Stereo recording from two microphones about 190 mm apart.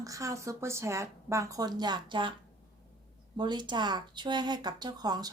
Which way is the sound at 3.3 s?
25° right (ahead or behind).